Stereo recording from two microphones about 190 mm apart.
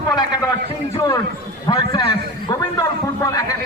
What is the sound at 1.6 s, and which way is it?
A man's voice, 25° left (ahead or behind).